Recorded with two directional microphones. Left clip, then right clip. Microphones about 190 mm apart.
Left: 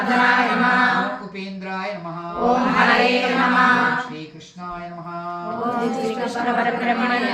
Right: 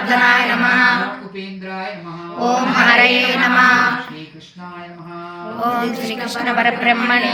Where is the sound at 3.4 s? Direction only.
15° right (ahead or behind).